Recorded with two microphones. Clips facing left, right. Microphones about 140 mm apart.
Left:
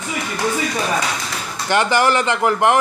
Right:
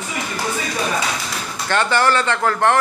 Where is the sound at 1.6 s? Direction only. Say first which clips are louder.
Left 1 dB; 15° left (ahead or behind).